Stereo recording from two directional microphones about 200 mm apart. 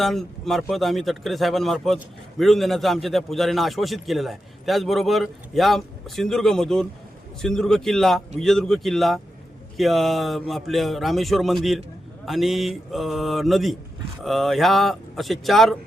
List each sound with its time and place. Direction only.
0.0 s a man's voice: centre (ahead or behind)